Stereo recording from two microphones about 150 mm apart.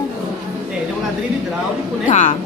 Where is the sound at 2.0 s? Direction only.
55° left (ahead or behind).